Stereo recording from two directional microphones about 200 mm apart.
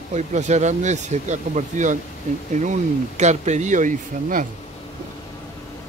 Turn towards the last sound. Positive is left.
turn(degrees=-40)  # may be behind; listen again after turning